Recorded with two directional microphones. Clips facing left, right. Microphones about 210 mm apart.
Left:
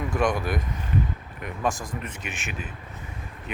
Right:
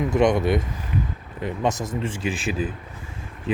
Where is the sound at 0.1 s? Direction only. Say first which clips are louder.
Right 6 dB; 25° right (ahead or behind).